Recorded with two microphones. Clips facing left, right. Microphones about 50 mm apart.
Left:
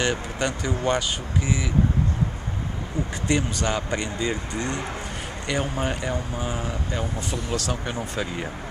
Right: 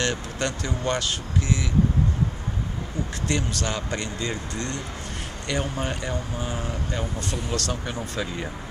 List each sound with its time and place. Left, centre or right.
0.0 s speech: centre
3.3 s speech: centre